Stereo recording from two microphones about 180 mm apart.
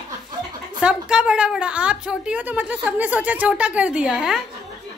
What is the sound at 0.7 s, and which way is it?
A woman's voice, 5° right (ahead or behind).